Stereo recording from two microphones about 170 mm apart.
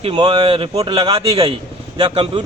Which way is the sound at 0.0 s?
30° right (ahead or behind).